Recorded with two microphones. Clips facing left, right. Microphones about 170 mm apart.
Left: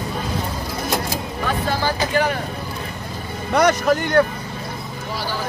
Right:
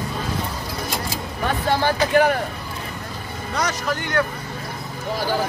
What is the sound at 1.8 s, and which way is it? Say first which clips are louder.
Speech: right 5 dB; 50° right (ahead or behind).